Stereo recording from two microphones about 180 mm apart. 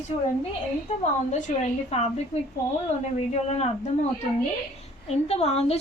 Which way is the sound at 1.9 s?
35° left (ahead or behind).